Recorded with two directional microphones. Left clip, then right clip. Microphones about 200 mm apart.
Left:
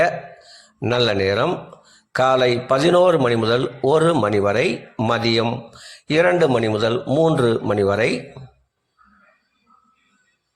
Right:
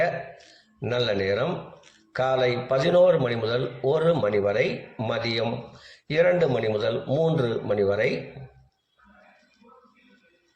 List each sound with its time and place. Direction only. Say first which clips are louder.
0.5 s a man's voice: left 7 dB; 55° left (ahead or behind)